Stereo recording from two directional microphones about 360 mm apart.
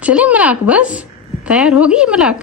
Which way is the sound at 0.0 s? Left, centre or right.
Centre.